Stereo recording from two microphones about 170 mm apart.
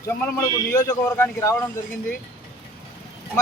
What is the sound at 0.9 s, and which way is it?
Speech, 15° left (ahead or behind).